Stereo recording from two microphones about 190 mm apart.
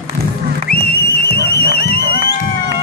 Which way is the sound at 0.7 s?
55° left (ahead or behind).